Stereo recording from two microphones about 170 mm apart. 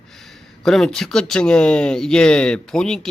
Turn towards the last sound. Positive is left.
turn(degrees=5)  # may be behind; listen again after turning